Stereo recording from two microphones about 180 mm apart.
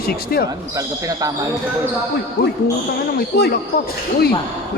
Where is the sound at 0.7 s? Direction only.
20° right (ahead or behind).